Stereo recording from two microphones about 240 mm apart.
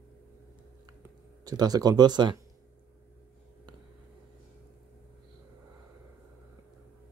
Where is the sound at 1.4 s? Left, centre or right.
Centre.